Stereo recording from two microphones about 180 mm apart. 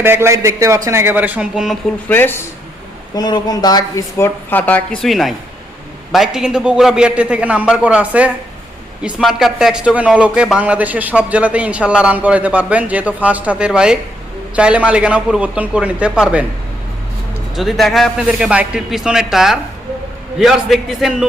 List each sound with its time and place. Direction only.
0.0 s a man's voice: 15° right (ahead or behind)
2.0 s a woman's voice: 10° left (ahead or behind)
3.2 s a woman's voice: 20° left (ahead or behind); by 16.5 s 5° right (ahead or behind)
17.5 s a man's voice: centre (ahead or behind)